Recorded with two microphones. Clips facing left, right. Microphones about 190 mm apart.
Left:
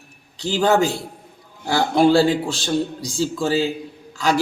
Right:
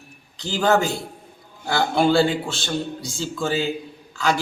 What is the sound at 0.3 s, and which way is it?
Speech, 35° left (ahead or behind).